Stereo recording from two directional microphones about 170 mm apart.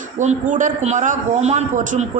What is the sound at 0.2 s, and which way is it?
A man's voice, 45° right (ahead or behind).